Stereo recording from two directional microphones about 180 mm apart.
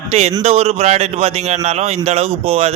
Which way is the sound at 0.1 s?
35° right (ahead or behind).